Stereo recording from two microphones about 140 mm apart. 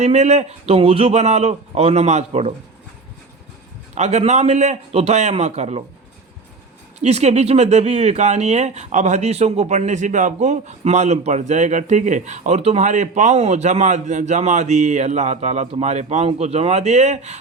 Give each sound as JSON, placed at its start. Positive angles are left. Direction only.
{"t": 0.0, "sound": "a man's voice", "side_deg": -50}
{"t": 3.9, "sound": "a man's voice", "side_deg": -55}
{"t": 7.0, "sound": "speech", "side_deg": -55}